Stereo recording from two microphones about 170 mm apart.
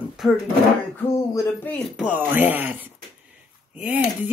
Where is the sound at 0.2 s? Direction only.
Centre (ahead or behind).